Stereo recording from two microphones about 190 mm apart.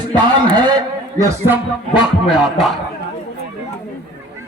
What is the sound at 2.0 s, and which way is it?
Speech, 5° right (ahead or behind).